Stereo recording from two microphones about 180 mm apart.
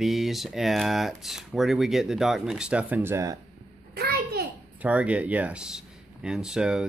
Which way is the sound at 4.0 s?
60° right (ahead or behind).